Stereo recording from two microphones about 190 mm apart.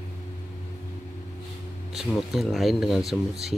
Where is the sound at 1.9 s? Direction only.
Centre (ahead or behind).